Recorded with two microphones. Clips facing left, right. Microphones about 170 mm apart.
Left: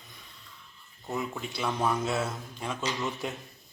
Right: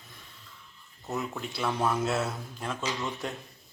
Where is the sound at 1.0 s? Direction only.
Centre (ahead or behind).